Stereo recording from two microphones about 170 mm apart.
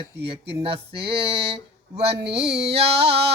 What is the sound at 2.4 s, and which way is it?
Speech, 80° right.